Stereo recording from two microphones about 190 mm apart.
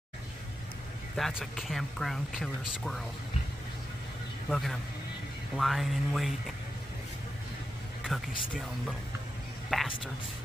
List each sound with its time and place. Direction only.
1.1 s speech: centre (ahead or behind)
4.5 s speech: centre (ahead or behind)
9.7 s whispering: centre (ahead or behind)